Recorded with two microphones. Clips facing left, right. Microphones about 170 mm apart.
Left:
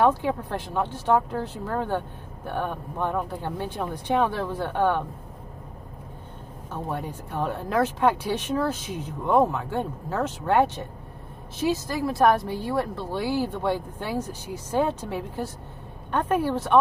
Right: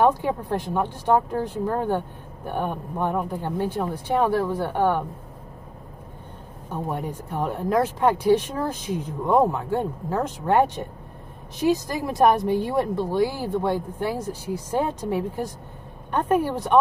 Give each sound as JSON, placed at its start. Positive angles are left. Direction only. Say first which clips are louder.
{"t": 0.0, "sound": "speech", "louder": "right 1 dB", "side_deg": -15}
{"t": 6.7, "sound": "speech", "louder": "right 3 dB", "side_deg": -15}